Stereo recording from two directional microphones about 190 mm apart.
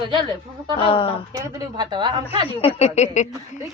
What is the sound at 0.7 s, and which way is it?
Speech, 30° left (ahead or behind).